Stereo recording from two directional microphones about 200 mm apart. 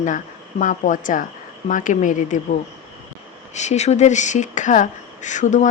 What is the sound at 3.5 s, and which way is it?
A woman's voice, 35° left (ahead or behind).